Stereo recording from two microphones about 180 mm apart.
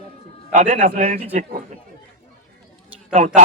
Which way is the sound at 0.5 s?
45° right (ahead or behind).